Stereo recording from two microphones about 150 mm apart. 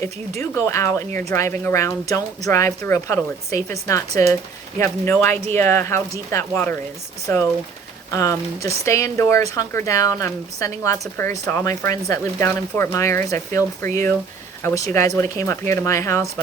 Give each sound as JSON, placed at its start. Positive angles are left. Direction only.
{"t": 0.0, "sound": "speech", "side_deg": 20}
{"t": 8.1, "sound": "speech", "side_deg": 20}